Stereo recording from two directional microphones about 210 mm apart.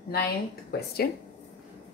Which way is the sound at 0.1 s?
50° left (ahead or behind).